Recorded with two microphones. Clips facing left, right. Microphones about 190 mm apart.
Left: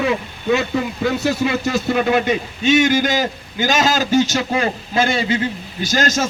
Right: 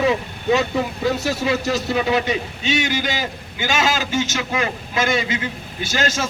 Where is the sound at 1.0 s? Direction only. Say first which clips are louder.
Left 4 dB; 60° left (ahead or behind).